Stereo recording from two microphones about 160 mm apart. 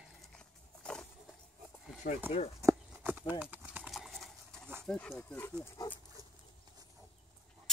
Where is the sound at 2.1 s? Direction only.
65° left (ahead or behind).